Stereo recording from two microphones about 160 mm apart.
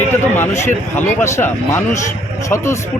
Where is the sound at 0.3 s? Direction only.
15° left (ahead or behind).